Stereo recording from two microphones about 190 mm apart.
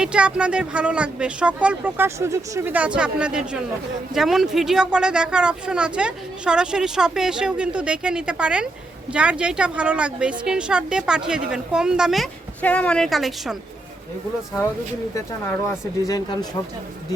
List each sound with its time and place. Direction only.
0.0 s speech: 5° right (ahead or behind)
15.1 s speech: 15° left (ahead or behind)